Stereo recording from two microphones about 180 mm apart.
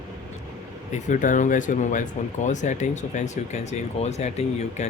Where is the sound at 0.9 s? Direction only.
45° left (ahead or behind).